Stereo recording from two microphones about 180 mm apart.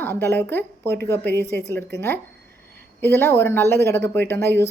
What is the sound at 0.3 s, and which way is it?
Speech, 10° left (ahead or behind).